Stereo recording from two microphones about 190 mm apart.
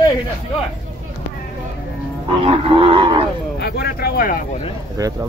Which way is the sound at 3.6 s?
55° left (ahead or behind).